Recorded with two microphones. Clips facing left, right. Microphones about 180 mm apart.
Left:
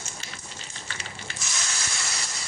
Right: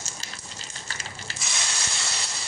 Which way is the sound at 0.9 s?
40° right (ahead or behind).